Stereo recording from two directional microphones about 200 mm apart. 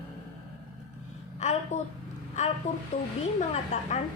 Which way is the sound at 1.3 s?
35° left (ahead or behind).